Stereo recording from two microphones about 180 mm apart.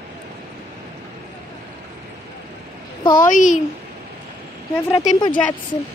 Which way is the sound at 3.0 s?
20° left (ahead or behind).